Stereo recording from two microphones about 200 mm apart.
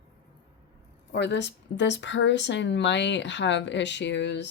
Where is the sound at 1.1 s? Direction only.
60° left (ahead or behind).